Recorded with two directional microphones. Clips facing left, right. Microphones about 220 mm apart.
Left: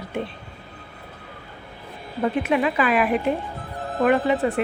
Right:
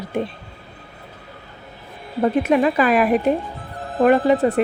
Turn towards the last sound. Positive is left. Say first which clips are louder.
# right 4 dB
turn(degrees=-40)  # may be behind; listen again after turning